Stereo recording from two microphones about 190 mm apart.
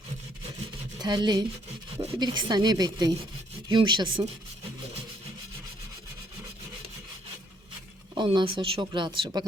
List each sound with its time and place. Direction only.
0.9 s speech: 25° right (ahead or behind)
8.1 s speech: 25° right (ahead or behind)